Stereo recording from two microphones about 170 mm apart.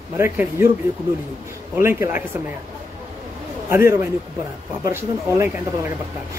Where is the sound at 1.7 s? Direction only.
15° right (ahead or behind).